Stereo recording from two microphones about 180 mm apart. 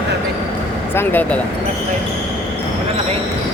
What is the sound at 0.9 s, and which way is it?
Speech, 10° left (ahead or behind).